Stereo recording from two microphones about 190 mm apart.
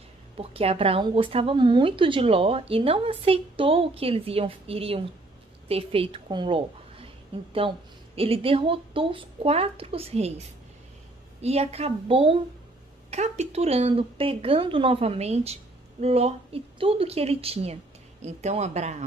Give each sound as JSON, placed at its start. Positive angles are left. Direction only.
{"t": 0.4, "sound": "a woman's voice", "side_deg": -30}
{"t": 11.4, "sound": "speech", "side_deg": -35}